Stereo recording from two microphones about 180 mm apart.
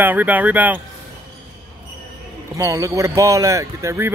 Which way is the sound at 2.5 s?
15° right (ahead or behind).